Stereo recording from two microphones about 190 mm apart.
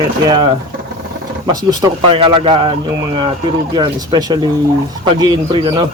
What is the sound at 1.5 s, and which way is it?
Speech, 20° right (ahead or behind).